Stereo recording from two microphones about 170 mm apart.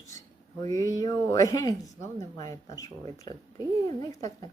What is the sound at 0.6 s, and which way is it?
Speech, 20° left (ahead or behind).